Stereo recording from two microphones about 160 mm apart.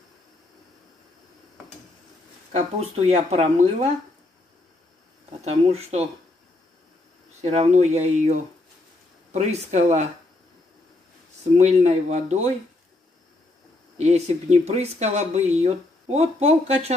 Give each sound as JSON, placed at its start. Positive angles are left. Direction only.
{"t": 2.5, "sound": "speech", "side_deg": -45}
{"t": 5.4, "sound": "speech", "side_deg": -40}
{"t": 7.4, "sound": "speech", "side_deg": -45}
{"t": 11.5, "sound": "speech", "side_deg": -45}
{"t": 13.9, "sound": "speech", "side_deg": -45}